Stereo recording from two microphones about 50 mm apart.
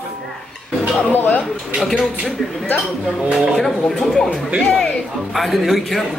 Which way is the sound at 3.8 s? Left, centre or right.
Centre.